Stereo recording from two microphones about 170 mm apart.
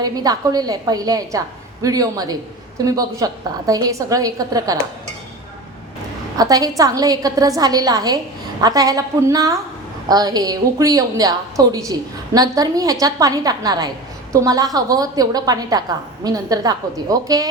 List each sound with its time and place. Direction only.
0.0 s a woman's voice: 20° right (ahead or behind)
6.3 s a woman's voice: 20° right (ahead or behind)